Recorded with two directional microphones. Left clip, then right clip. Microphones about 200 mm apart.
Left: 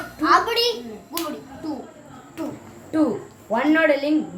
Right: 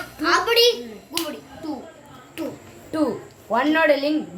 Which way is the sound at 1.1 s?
45° left (ahead or behind).